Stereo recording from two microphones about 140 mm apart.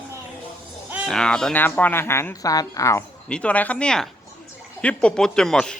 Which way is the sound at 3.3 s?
10° left (ahead or behind).